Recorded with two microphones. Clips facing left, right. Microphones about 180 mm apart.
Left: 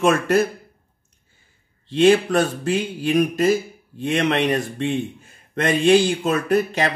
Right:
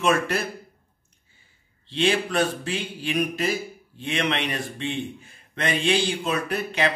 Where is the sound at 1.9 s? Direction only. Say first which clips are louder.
Left 8 dB; 45° left (ahead or behind).